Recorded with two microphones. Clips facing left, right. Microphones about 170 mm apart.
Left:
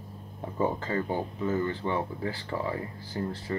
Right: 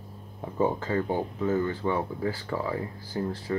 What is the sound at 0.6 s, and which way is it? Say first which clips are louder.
Speech: right 2 dB; 10° right (ahead or behind).